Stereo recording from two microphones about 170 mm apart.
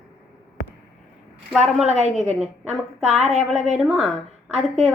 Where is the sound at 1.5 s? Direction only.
Centre (ahead or behind).